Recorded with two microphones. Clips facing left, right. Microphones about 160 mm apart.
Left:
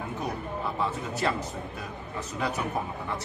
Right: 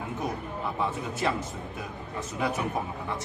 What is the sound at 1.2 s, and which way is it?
A man's voice, 15° right (ahead or behind).